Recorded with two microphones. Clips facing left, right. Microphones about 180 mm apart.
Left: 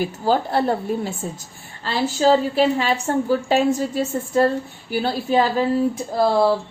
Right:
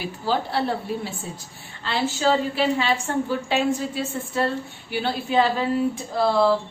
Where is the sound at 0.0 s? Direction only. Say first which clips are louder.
Left 5 dB; 45° left (ahead or behind).